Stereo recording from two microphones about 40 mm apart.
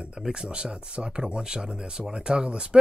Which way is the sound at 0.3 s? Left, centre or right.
Right.